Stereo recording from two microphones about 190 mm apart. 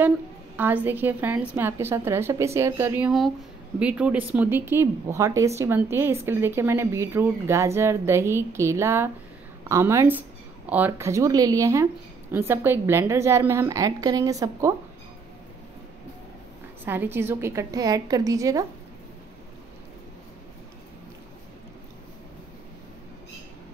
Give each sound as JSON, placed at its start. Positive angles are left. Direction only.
{"t": 0.6, "sound": "speech", "side_deg": -10}
{"t": 16.8, "sound": "speech", "side_deg": -10}